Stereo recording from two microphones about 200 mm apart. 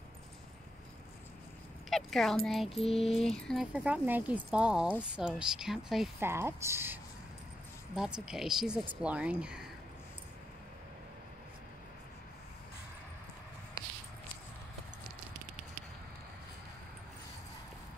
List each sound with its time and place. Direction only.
1.9 s speech: centre (ahead or behind)
6.1 s speech: 10° right (ahead or behind)